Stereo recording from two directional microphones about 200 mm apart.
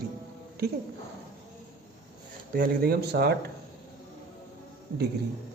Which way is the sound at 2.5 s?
50° right (ahead or behind).